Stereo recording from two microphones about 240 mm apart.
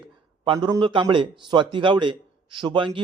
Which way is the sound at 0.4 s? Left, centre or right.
Centre.